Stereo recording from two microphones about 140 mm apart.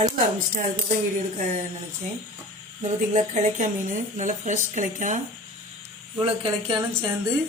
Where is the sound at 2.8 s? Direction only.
60° right (ahead or behind).